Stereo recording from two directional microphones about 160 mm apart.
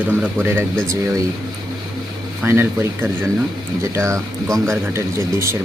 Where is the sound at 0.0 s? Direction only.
10° right (ahead or behind).